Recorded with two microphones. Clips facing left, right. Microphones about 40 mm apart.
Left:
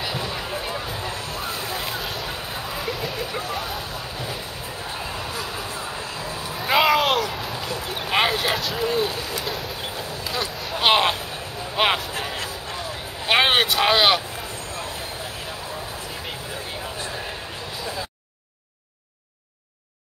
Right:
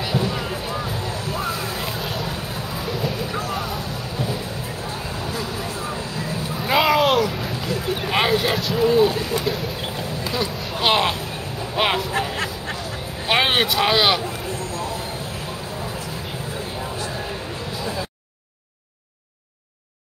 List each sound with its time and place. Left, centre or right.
0.0 s music: centre
1.3 s a sound: centre
6.6 s a sound: centre
9.4 s vehicle: centre
10.8 s speech: centre
13.3 s speech: centre